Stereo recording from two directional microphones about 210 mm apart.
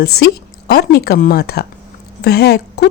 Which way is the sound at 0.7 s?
50° left (ahead or behind).